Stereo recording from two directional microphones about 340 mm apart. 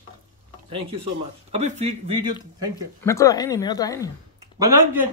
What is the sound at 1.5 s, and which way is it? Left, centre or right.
Speech, centre.